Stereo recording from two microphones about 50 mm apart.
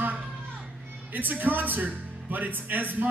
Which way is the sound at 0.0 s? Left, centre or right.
Right.